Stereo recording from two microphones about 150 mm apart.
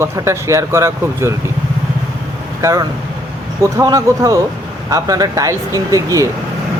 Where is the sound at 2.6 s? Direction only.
20° right (ahead or behind).